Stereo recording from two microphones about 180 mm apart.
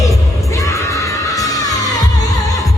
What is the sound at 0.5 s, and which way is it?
Music, 20° left (ahead or behind).